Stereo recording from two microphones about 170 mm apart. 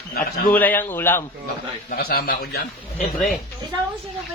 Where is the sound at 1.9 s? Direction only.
60° left (ahead or behind).